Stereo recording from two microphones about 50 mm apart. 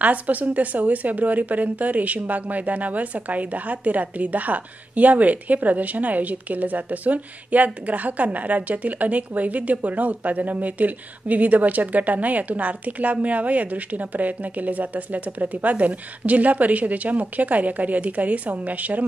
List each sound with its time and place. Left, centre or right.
0.0 s a woman's voice: right